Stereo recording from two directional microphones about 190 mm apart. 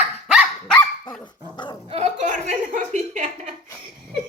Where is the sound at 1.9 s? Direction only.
35° right (ahead or behind).